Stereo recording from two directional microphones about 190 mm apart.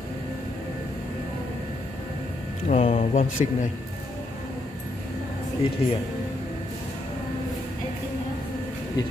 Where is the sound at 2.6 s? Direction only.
35° left (ahead or behind).